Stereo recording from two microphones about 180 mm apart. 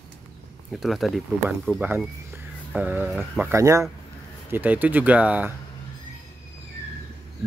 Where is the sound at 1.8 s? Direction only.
10° right (ahead or behind).